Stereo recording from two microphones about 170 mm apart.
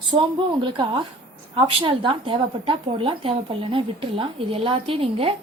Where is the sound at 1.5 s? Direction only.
30° right (ahead or behind).